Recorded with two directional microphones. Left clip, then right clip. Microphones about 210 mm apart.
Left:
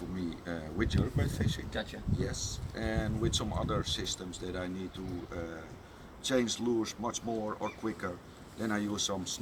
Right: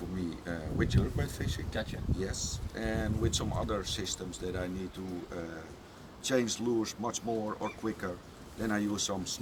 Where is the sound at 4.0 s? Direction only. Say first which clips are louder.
Even; 45° right (ahead or behind).